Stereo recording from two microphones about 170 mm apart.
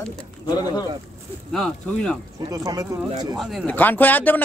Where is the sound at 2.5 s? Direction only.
20° right (ahead or behind).